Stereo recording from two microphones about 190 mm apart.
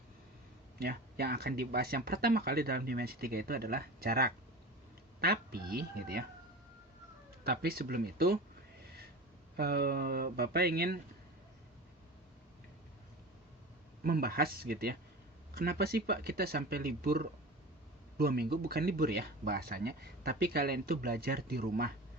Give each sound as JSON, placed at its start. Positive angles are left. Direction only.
{"t": 0.8, "sound": "speech", "side_deg": -55}
{"t": 7.4, "sound": "speech", "side_deg": -55}
{"t": 9.6, "sound": "speech", "side_deg": -55}
{"t": 14.0, "sound": "speech", "side_deg": -50}